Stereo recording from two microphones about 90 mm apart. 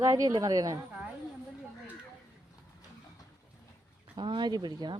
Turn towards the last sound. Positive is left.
turn(degrees=-55)  # may be behind; listen again after turning